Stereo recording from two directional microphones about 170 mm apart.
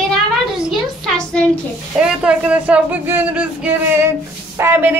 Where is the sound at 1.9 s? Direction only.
5° right (ahead or behind).